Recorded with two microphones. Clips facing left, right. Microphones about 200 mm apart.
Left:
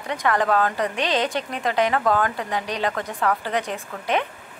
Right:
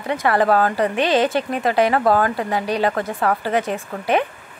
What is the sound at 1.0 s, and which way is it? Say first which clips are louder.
Speech: right 6 dB; 5° right (ahead or behind).